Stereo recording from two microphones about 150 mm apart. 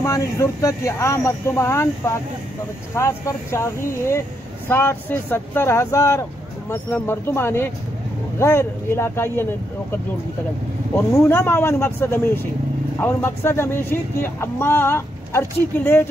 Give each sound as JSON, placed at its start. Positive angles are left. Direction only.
{"t": 0.0, "sound": "speech", "side_deg": 20}
{"t": 11.0, "sound": "speech", "side_deg": 15}